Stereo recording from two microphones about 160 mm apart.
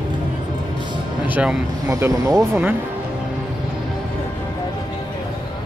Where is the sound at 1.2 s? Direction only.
10° right (ahead or behind).